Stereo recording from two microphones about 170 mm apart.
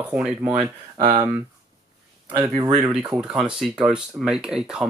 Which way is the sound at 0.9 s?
30° right (ahead or behind).